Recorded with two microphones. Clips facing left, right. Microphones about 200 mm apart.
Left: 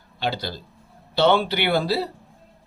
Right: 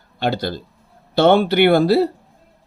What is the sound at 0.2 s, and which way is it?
Speech, 50° right (ahead or behind).